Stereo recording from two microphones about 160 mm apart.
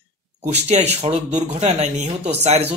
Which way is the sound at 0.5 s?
45° right (ahead or behind).